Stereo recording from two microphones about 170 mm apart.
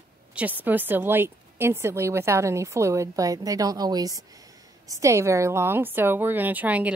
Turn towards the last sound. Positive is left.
turn(degrees=-10)  # may be behind; listen again after turning